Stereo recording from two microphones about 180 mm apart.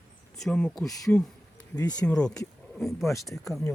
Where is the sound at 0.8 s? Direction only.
20° left (ahead or behind).